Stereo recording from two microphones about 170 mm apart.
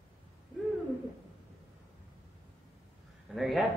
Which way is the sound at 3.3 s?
Centre (ahead or behind).